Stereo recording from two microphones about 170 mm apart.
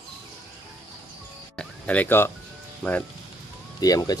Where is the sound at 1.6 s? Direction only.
10° left (ahead or behind).